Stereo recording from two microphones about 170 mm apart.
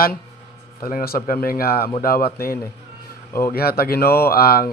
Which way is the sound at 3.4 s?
65° left (ahead or behind).